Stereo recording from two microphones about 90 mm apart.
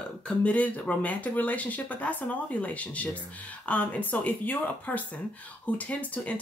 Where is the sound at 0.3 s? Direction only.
15° left (ahead or behind).